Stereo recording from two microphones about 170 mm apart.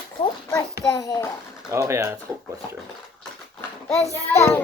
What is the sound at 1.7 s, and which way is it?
Speech, 15° right (ahead or behind).